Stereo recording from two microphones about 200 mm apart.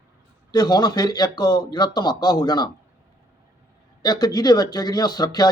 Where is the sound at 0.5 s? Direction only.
20° left (ahead or behind).